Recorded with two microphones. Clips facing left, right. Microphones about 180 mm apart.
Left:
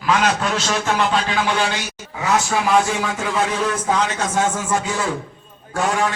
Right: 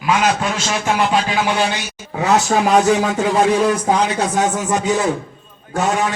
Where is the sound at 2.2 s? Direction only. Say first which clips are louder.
Right 4 dB; 40° right (ahead or behind).